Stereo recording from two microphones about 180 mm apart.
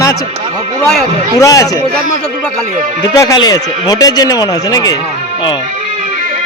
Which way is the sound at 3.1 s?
20° left (ahead or behind).